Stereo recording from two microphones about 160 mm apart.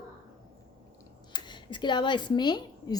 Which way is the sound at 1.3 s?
30° left (ahead or behind).